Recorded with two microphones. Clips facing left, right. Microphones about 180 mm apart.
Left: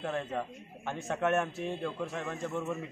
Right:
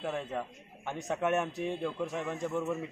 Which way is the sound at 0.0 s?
10° right (ahead or behind).